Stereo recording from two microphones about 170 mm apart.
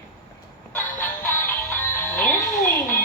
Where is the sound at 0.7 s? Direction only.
10° left (ahead or behind).